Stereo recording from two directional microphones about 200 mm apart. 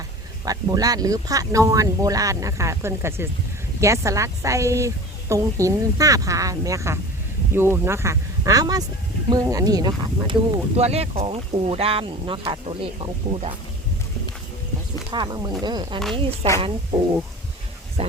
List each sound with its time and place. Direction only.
0.4 s speech: 20° right (ahead or behind)
15.1 s speech: 20° right (ahead or behind)